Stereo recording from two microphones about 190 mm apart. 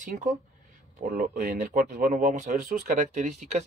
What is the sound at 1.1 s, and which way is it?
Speech, 50° right (ahead or behind).